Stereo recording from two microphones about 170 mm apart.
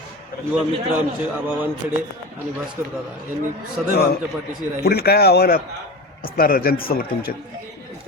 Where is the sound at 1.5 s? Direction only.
10° right (ahead or behind).